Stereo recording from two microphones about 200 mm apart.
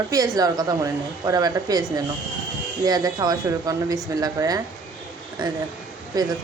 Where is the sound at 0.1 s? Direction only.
15° right (ahead or behind).